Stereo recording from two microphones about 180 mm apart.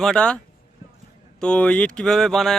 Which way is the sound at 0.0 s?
5° left (ahead or behind).